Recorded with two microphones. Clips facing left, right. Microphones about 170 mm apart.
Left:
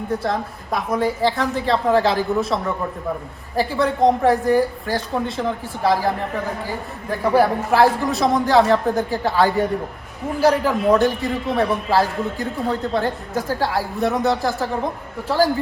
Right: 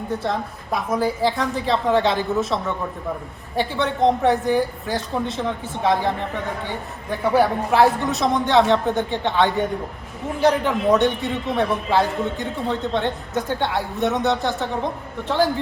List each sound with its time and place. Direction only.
0.1 s speech: centre (ahead or behind)